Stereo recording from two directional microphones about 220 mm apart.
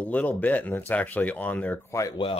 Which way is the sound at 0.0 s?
5° left (ahead or behind).